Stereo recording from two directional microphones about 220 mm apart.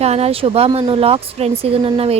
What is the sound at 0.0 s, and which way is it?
Speech, 30° right (ahead or behind).